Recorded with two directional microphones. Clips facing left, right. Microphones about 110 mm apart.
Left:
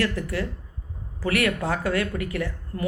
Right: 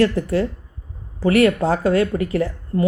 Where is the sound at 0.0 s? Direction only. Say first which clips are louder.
Right 9 dB; 30° right (ahead or behind).